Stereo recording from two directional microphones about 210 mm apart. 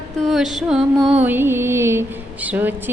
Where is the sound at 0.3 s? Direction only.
Centre (ahead or behind).